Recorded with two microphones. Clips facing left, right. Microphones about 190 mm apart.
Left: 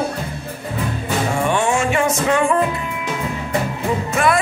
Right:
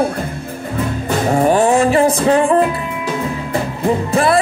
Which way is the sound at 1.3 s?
40° right (ahead or behind).